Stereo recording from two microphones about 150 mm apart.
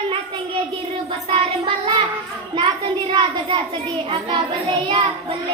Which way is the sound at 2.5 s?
30° right (ahead or behind).